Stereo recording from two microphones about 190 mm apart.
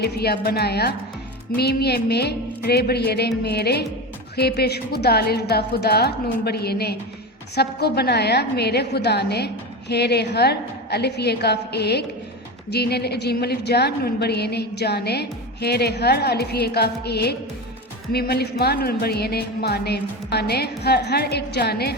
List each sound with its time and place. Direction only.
0.0 s a woman's voice: 55° left (ahead or behind)